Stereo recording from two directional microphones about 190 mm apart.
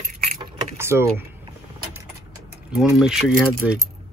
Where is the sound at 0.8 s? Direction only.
10° right (ahead or behind).